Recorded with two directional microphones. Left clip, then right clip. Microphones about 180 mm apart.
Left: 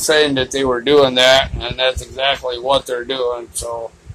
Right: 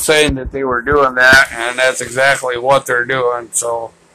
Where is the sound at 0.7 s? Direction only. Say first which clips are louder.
Right 1 dB; 40° left (ahead or behind).